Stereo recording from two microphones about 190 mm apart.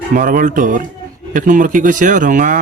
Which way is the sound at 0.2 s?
45° right (ahead or behind).